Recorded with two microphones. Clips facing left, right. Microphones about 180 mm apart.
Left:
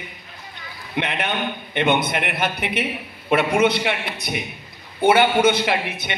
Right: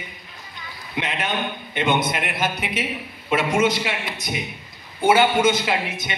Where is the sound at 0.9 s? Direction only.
60° left (ahead or behind).